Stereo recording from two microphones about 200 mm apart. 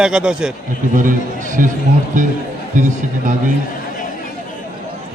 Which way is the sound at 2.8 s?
40° right (ahead or behind).